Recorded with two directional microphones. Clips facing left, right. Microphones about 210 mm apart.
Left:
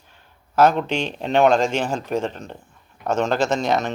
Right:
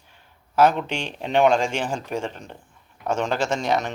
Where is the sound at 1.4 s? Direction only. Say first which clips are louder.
Left 3 dB; 10° right (ahead or behind).